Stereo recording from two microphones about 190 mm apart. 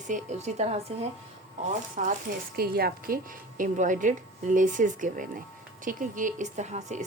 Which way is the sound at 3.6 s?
40° right (ahead or behind).